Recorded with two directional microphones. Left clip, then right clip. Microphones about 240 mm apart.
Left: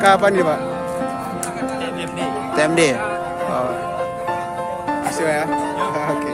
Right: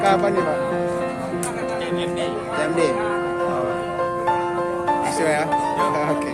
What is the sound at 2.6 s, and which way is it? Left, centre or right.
Speech, left.